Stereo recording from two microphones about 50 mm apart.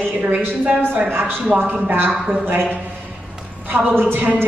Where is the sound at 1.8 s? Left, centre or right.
Right.